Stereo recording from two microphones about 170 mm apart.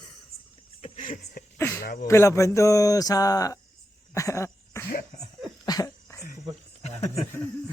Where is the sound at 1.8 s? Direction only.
55° left (ahead or behind).